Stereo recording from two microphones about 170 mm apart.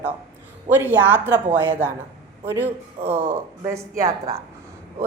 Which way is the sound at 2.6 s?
35° right (ahead or behind).